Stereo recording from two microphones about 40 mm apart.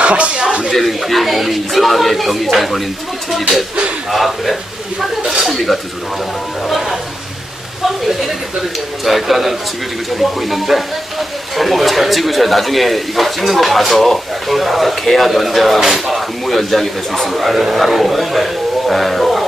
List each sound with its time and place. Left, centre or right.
0.0 s a sound: right
0.7 s speech: centre
4.1 s speech: centre
9.0 s speech: centre